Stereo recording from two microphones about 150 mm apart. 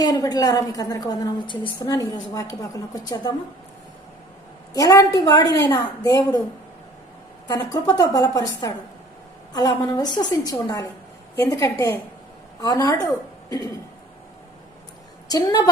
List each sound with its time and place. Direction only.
0.0 s a woman's voice: 25° left (ahead or behind)
4.7 s a woman's voice: 25° left (ahead or behind)
7.4 s a woman's voice: 25° left (ahead or behind)
15.3 s a woman's voice: 25° left (ahead or behind)